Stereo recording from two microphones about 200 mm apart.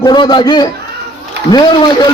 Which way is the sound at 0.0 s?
20° left (ahead or behind).